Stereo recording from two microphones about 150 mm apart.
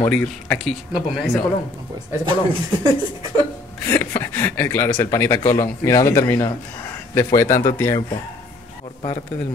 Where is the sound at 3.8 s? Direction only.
20° left (ahead or behind).